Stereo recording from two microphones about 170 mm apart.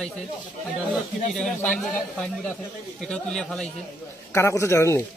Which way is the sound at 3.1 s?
5° left (ahead or behind).